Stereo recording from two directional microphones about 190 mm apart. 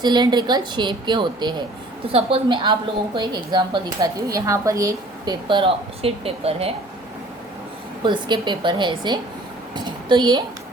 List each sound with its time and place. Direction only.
0.0 s speech: 25° right (ahead or behind)
8.0 s a woman's voice: 25° right (ahead or behind)